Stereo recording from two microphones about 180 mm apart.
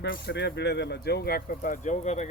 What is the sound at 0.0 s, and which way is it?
Speech, 65° left (ahead or behind).